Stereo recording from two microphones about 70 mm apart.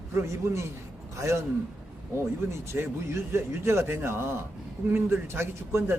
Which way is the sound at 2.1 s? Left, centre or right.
Right.